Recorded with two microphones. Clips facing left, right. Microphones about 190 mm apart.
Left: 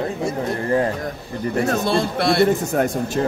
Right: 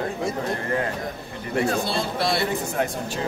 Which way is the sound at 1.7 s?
55° left (ahead or behind).